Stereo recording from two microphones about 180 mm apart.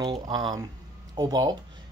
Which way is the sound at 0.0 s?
25° right (ahead or behind).